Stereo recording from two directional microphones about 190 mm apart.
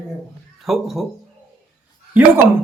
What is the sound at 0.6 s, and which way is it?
Speech, centre (ahead or behind).